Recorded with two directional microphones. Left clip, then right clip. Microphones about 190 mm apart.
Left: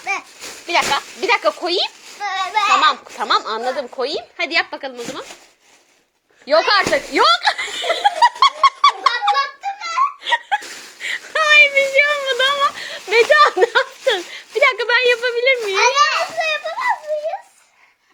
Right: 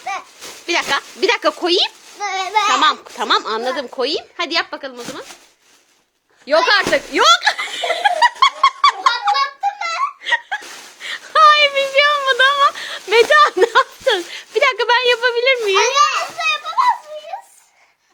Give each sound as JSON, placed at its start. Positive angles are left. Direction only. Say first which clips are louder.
{"t": 0.7, "sound": "speech", "louder": "left 1 dB", "side_deg": -30}
{"t": 2.2, "sound": "a sound", "louder": "right 1 dB", "side_deg": -55}
{"t": 2.8, "sound": "a woman's voice", "louder": "right 1 dB", "side_deg": -30}
{"t": 6.4, "sound": "snicker", "louder": "right 1 dB", "side_deg": -15}
{"t": 11.0, "sound": "a sound", "louder": "right 7 dB", "side_deg": -5}
{"t": 15.9, "sound": "children playing", "louder": "right 1 dB", "side_deg": -50}